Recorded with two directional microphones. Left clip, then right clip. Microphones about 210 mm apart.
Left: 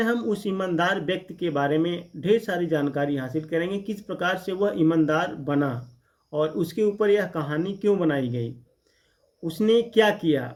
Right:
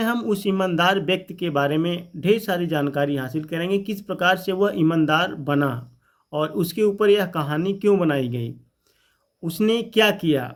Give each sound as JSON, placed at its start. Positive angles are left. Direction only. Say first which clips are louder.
{"t": 0.0, "sound": "speech", "louder": "right 2 dB", "side_deg": -35}
{"t": 9.5, "sound": "speech", "louder": "left 1 dB", "side_deg": -35}